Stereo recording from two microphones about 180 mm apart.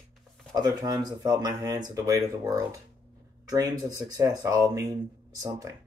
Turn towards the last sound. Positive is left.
turn(degrees=-20)  # may be behind; listen again after turning